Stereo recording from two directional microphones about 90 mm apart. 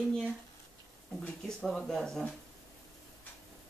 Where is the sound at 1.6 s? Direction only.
Centre (ahead or behind).